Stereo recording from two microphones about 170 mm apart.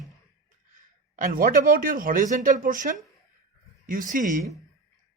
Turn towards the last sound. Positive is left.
turn(degrees=-50)  # may be behind; listen again after turning